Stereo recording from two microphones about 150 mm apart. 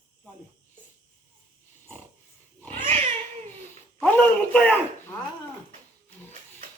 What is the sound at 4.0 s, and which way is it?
Speech, 10° left (ahead or behind).